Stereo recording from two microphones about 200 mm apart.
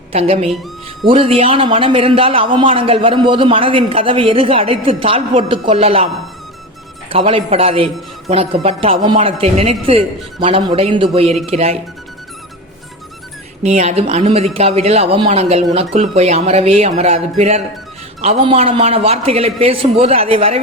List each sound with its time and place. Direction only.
0.2 s a man's voice: 30° right (ahead or behind)
7.1 s a man's voice: 25° right (ahead or behind)
13.6 s a man's voice: 35° right (ahead or behind)